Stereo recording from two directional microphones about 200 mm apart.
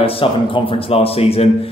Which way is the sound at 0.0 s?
25° left (ahead or behind).